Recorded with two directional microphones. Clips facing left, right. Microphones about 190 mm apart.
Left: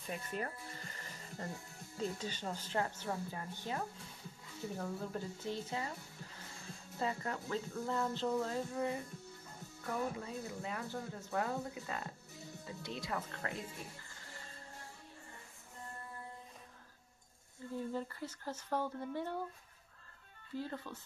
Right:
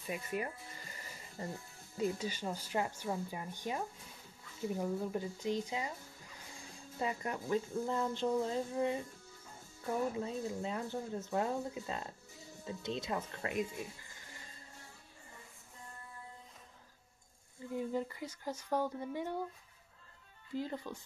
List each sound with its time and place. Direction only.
0.0 s music: 10° right (ahead or behind)
2.0 s a woman's voice: 10° right (ahead or behind)
7.0 s a woman's voice: 15° right (ahead or behind)
17.7 s a woman's voice: 15° right (ahead or behind)
20.5 s a woman's voice: 15° right (ahead or behind)